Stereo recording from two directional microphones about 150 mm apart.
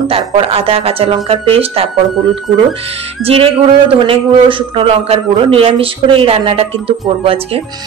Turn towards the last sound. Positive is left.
turn(degrees=-40)  # may be behind; listen again after turning